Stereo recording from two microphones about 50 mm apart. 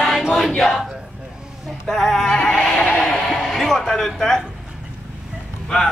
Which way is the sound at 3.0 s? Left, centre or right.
Centre.